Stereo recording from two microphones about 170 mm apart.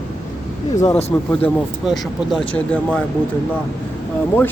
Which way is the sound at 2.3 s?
5° left (ahead or behind).